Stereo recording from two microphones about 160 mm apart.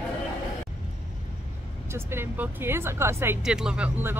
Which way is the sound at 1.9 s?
15° right (ahead or behind).